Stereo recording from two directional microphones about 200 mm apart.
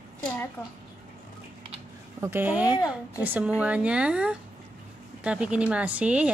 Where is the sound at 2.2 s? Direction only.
10° right (ahead or behind).